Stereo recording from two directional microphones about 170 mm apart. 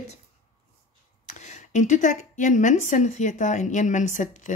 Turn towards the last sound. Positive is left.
turn(degrees=45)  # may be behind; listen again after turning